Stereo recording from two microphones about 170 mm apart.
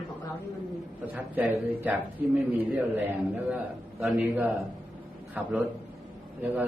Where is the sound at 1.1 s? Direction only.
10° right (ahead or behind).